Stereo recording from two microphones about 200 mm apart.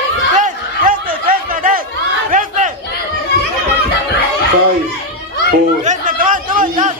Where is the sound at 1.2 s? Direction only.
45° right (ahead or behind).